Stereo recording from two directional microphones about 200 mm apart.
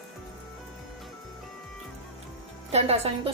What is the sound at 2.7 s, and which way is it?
Speech, 30° right (ahead or behind).